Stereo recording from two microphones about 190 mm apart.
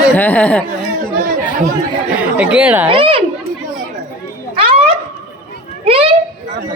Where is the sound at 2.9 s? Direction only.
25° right (ahead or behind).